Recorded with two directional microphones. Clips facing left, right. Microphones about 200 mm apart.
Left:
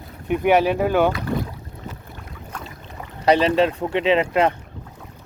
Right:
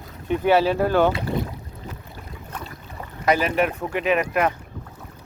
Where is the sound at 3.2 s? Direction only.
30° left (ahead or behind).